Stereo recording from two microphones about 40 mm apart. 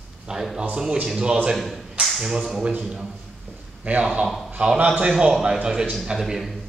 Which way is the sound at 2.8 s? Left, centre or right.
Centre.